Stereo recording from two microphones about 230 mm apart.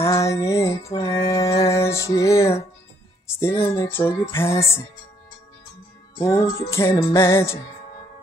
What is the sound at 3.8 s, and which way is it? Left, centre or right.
Music, centre.